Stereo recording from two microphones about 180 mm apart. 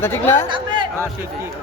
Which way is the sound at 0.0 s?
15° left (ahead or behind).